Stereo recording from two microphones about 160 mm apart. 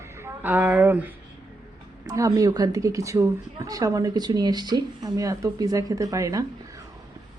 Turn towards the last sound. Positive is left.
turn(degrees=-20)  # may be behind; listen again after turning